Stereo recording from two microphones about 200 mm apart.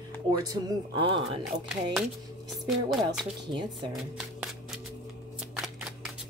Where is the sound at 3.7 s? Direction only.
5° right (ahead or behind).